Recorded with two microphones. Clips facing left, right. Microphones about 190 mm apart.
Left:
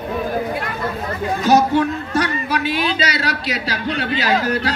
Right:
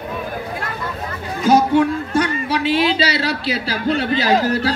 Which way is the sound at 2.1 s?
30° right (ahead or behind).